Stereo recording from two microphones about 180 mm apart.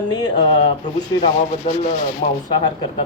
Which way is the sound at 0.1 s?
20° left (ahead or behind).